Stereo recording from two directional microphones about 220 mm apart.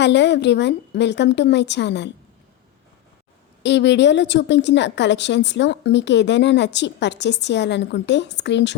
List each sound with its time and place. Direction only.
0.0 s a woman's voice: 50° left (ahead or behind)
3.6 s a woman's voice: 50° left (ahead or behind)